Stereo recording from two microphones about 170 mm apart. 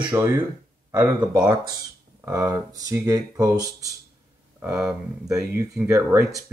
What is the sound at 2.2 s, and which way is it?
Speech, 20° right (ahead or behind).